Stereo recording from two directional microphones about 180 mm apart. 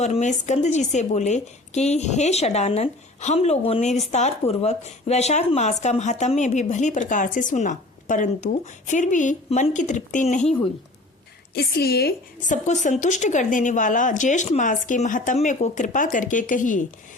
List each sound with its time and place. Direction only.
0.0 s a woman's voice: 40° left (ahead or behind)
11.5 s a woman's voice: 60° left (ahead or behind)
12.5 s a woman's voice: 40° left (ahead or behind)